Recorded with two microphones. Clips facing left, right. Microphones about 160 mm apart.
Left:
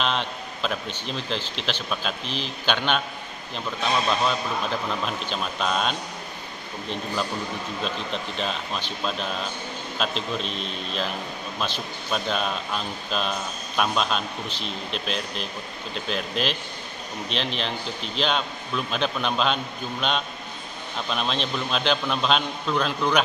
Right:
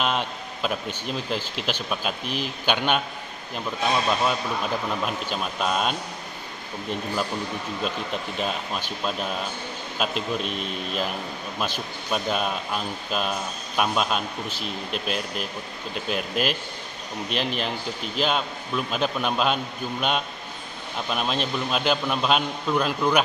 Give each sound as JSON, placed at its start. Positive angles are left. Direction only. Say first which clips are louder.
{"t": 0.0, "sound": "speech", "louder": "right 1 dB", "side_deg": -10}
{"t": 8.4, "sound": "speech", "louder": "right 2 dB", "side_deg": -10}